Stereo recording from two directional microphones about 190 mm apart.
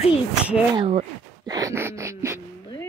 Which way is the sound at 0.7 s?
30° right (ahead or behind).